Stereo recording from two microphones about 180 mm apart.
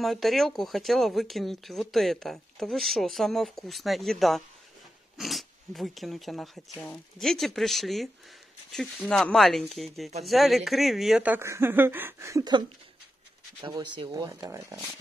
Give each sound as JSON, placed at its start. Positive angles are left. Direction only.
{"t": 0.0, "sound": "speech", "side_deg": 0}